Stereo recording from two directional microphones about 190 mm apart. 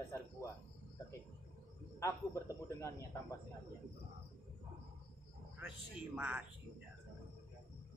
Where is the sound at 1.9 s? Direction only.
15° left (ahead or behind).